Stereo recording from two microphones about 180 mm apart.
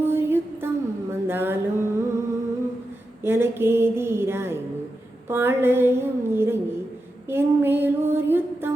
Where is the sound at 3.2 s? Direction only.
10° right (ahead or behind).